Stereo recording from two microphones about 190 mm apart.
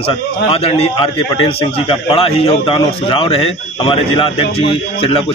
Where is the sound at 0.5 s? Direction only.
30° left (ahead or behind).